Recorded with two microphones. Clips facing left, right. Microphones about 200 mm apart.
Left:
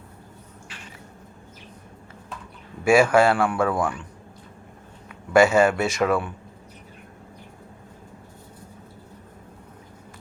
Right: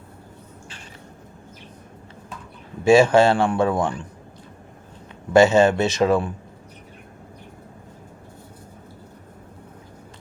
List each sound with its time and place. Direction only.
2.8 s a man's voice: 20° right (ahead or behind)
5.3 s a man's voice: 20° right (ahead or behind)